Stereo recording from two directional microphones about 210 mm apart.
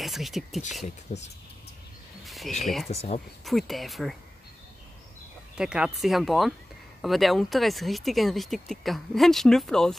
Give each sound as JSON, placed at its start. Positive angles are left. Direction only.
{"t": 0.0, "sound": "speech", "side_deg": 0}
{"t": 0.8, "sound": "speech", "side_deg": 35}
{"t": 2.2, "sound": "a sound", "side_deg": 0}
{"t": 2.6, "sound": "speech", "side_deg": 0}
{"t": 2.9, "sound": "speech", "side_deg": 30}
{"t": 3.4, "sound": "speech", "side_deg": 0}
{"t": 5.6, "sound": "speech", "side_deg": -5}